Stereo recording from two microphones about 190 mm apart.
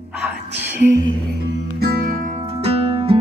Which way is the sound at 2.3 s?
35° right (ahead or behind).